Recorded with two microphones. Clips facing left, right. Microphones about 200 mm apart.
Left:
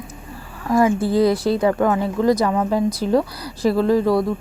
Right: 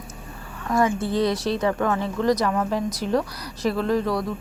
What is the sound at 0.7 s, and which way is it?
Speech, 30° left (ahead or behind).